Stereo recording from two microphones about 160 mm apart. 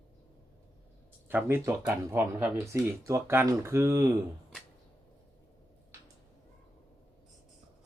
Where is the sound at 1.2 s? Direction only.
15° right (ahead or behind).